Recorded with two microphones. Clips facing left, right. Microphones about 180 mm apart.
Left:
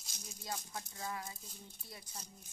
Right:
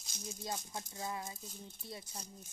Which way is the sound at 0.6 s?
25° right (ahead or behind).